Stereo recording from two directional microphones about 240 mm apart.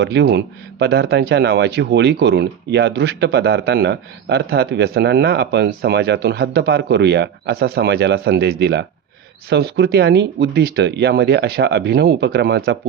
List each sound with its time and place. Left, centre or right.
0.0 s speech: right